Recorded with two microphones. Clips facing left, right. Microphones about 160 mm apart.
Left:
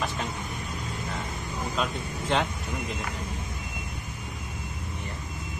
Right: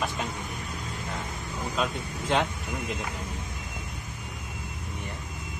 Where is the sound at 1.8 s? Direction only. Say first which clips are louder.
Right 1 dB; 10° right (ahead or behind).